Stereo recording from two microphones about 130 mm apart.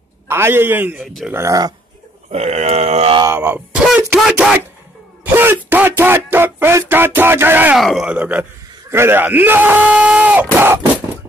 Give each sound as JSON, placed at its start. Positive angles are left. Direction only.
{"t": 0.3, "sound": "speech", "side_deg": -15}
{"t": 1.0, "sound": "speech", "side_deg": 0}
{"t": 1.3, "sound": "speech", "side_deg": -25}
{"t": 2.3, "sound": "a sound", "side_deg": -60}
{"t": 3.3, "sound": "speech", "side_deg": -10}
{"t": 7.8, "sound": "speech", "side_deg": -5}